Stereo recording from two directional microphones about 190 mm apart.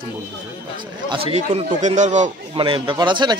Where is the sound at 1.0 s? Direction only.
30° right (ahead or behind).